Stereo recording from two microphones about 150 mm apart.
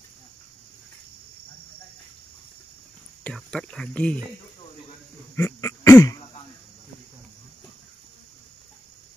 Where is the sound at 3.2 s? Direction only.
5° left (ahead or behind).